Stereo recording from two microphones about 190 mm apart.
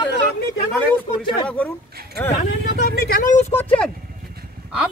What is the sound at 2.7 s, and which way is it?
Speech, 55° left (ahead or behind).